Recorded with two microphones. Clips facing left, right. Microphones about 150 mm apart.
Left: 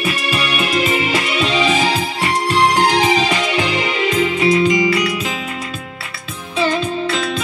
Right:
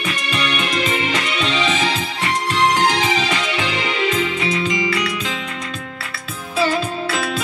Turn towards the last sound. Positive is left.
turn(degrees=-5)  # may be behind; listen again after turning